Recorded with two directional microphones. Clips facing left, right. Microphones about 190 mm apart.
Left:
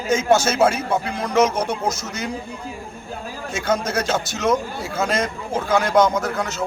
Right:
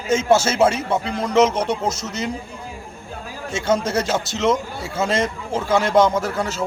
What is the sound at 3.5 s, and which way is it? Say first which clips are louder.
A man's voice: right 2 dB; 25° right (ahead or behind).